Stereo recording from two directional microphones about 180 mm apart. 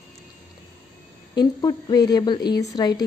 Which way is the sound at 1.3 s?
20° left (ahead or behind).